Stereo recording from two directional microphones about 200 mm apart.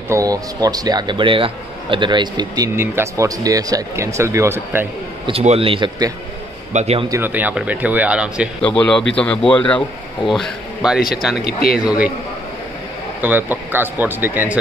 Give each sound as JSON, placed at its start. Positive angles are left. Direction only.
{"t": 0.1, "sound": "a man's voice", "side_deg": -15}
{"t": 5.2, "sound": "speech", "side_deg": -30}
{"t": 6.7, "sound": "a man's voice", "side_deg": -30}
{"t": 7.1, "sound": "a man's voice", "side_deg": -10}
{"t": 8.6, "sound": "speech", "side_deg": 5}
{"t": 11.4, "sound": "speech", "side_deg": 50}
{"t": 11.8, "sound": "speech", "side_deg": -5}
{"t": 13.2, "sound": "a man's voice", "side_deg": -10}